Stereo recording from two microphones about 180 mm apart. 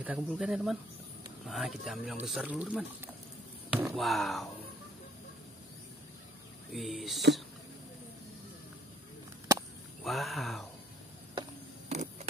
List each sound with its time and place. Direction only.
0.0 s speech: 5° right (ahead or behind)
6.7 s speech: centre (ahead or behind)
10.0 s speech: centre (ahead or behind)
11.9 s a sound: 40° right (ahead or behind)